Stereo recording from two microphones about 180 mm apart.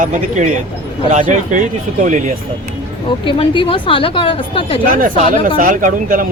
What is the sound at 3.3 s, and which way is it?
A woman's voice, 30° left (ahead or behind).